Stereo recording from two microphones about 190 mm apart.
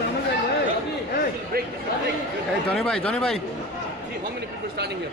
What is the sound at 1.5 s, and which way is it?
Chatter, 50° right (ahead or behind).